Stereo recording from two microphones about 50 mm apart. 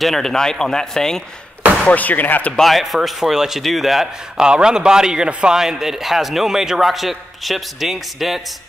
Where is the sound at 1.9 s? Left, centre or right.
Left.